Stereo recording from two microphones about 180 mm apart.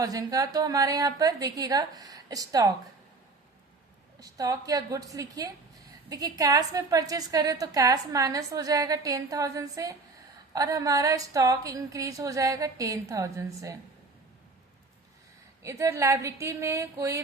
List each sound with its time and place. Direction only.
0.0 s a woman's voice: 20° right (ahead or behind)
4.2 s a woman's voice: 20° right (ahead or behind)
15.6 s speech: 15° right (ahead or behind)